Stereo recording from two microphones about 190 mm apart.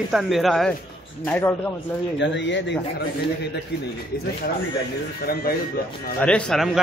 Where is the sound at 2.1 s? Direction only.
70° left (ahead or behind).